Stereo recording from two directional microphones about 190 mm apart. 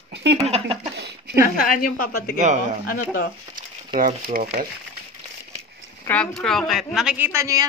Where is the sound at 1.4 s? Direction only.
50° left (ahead or behind).